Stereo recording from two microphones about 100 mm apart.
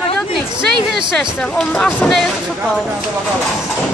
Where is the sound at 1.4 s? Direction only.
10° left (ahead or behind).